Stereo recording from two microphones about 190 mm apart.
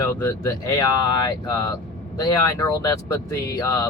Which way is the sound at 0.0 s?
15° left (ahead or behind).